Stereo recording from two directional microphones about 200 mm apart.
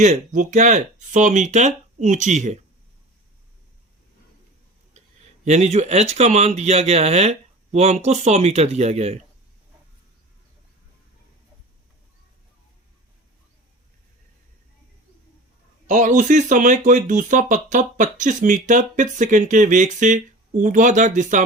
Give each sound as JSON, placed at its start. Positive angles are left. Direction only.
{"t": 0.0, "sound": "speech", "side_deg": -40}
{"t": 5.5, "sound": "speech", "side_deg": -35}
{"t": 15.9, "sound": "speech", "side_deg": -40}